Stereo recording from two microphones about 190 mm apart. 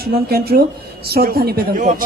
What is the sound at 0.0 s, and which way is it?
Speech, 55° right (ahead or behind).